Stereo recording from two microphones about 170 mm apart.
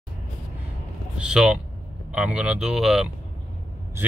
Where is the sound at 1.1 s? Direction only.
5° right (ahead or behind).